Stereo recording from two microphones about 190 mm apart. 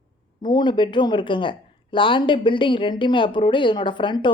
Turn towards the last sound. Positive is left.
turn(degrees=25)  # may be behind; listen again after turning